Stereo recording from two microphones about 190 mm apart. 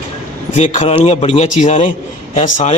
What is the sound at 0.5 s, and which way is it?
A man's voice, 40° left (ahead or behind).